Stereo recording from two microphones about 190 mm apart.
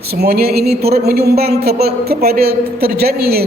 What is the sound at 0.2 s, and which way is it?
A man's voice, 55° right (ahead or behind).